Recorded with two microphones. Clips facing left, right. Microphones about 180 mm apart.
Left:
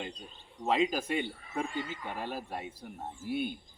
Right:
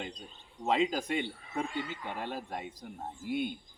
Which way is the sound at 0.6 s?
10° left (ahead or behind).